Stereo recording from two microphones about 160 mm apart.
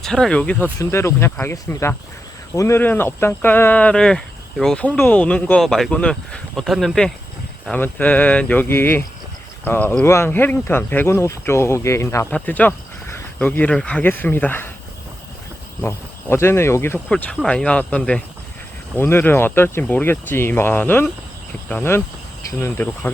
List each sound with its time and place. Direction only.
0.0 s speech: 5° left (ahead or behind)
15.8 s speech: 15° left (ahead or behind)